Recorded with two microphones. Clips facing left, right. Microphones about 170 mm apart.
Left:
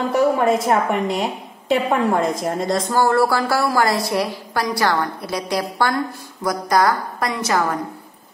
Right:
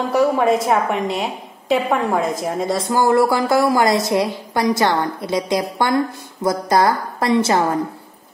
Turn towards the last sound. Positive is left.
turn(degrees=-25)  # may be behind; listen again after turning